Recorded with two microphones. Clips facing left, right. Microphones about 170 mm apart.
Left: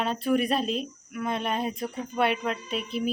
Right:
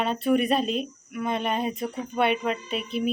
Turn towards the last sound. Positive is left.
turn(degrees=0)  # may be behind; listen again after turning